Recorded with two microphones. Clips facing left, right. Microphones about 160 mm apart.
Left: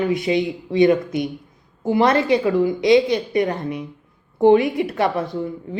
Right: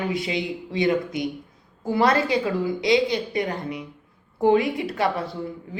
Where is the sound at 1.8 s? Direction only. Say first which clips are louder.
Left 3 dB; 20° left (ahead or behind).